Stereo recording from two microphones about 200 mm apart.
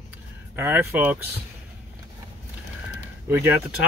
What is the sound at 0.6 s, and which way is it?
Speech, 10° right (ahead or behind).